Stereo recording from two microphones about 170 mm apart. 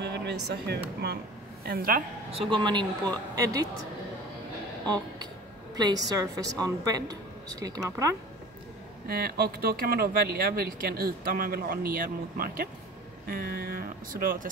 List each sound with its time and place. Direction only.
0.0 s speech: 80° right
1.7 s speech: 60° right (ahead or behind)
2.3 s a woman's voice: 30° right (ahead or behind)
4.8 s a woman's voice: 25° right (ahead or behind)
9.0 s speech: 65° right (ahead or behind)